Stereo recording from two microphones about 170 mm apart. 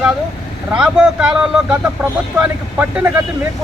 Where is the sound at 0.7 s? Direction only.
5° right (ahead or behind).